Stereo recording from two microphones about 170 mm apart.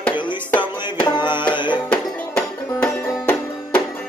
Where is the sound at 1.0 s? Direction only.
25° left (ahead or behind).